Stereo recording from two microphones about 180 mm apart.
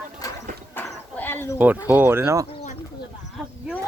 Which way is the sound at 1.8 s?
10° right (ahead or behind).